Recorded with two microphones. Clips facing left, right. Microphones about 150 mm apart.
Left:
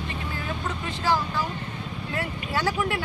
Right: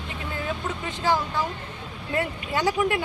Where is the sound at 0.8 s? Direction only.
20° right (ahead or behind).